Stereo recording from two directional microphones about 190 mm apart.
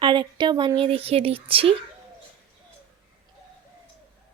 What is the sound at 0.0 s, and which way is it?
Speech, 25° right (ahead or behind).